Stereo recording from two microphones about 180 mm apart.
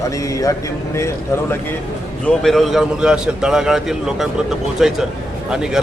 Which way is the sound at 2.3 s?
Centre (ahead or behind).